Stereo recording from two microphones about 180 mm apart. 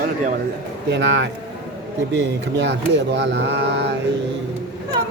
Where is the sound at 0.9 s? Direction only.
80° right.